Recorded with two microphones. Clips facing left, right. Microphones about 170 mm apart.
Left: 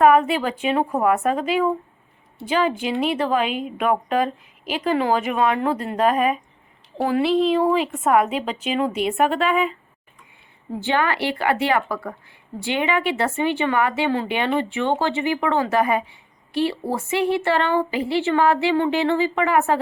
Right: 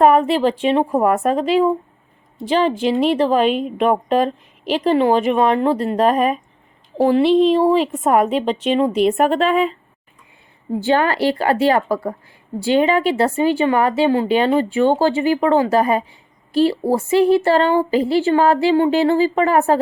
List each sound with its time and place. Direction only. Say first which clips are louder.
0.0 s speech: right 3 dB; 35° right (ahead or behind)
7.5 s speech: right 4 dB; 35° right (ahead or behind)
10.8 s speech: right 5 dB; 40° right (ahead or behind)